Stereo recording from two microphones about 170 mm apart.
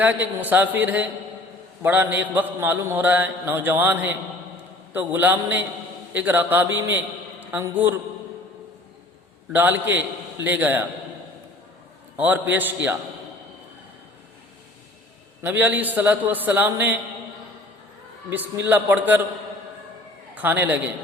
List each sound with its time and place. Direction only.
0.0 s mantra: 10° right (ahead or behind)
6.7 s a man's voice: 10° right (ahead or behind)
9.5 s mantra: 10° right (ahead or behind)
12.1 s mantra: 10° right (ahead or behind)
15.4 s mantra: 15° right (ahead or behind)
18.3 s mantra: 10° right (ahead or behind)
20.3 s a man's voice: 10° right (ahead or behind)